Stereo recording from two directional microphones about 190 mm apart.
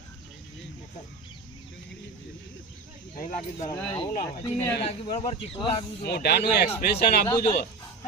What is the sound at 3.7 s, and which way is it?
Speech, 20° left (ahead or behind).